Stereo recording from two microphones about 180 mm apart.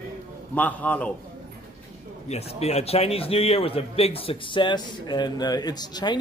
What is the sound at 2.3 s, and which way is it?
A man's voice, 35° left (ahead or behind).